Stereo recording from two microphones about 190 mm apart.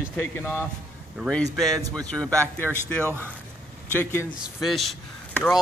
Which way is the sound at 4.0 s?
10° left (ahead or behind).